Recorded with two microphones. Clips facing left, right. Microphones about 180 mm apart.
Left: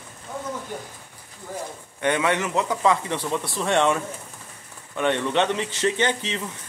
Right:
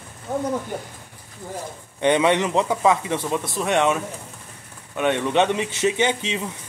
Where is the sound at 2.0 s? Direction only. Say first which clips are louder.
Right 5 dB; 20° right (ahead or behind).